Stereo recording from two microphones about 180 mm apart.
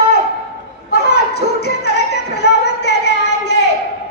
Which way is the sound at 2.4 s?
70° left (ahead or behind).